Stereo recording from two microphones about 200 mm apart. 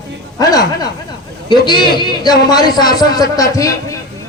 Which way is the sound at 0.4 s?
20° left (ahead or behind).